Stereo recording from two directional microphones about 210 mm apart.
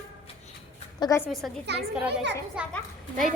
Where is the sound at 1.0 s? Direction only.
15° left (ahead or behind).